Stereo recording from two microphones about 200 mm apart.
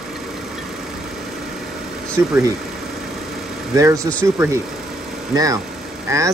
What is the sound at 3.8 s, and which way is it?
Speech, 15° right (ahead or behind).